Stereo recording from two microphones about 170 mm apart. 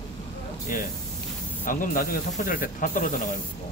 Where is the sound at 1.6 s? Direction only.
55° left (ahead or behind).